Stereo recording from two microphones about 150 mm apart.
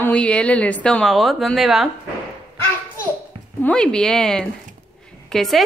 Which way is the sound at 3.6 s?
5° left (ahead or behind).